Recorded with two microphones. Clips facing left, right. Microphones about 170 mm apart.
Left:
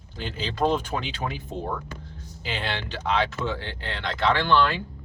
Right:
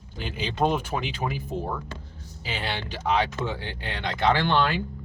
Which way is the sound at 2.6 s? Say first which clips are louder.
Right 1 dB; 10° right (ahead or behind).